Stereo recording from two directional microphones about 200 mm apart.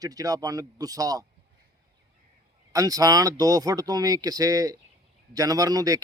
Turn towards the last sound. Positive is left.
turn(degrees=-20)  # may be behind; listen again after turning